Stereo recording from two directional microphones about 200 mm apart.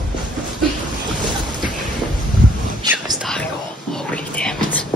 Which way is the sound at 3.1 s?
Centre (ahead or behind).